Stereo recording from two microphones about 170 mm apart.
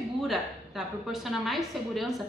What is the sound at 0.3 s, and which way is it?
A woman's voice, centre (ahead or behind).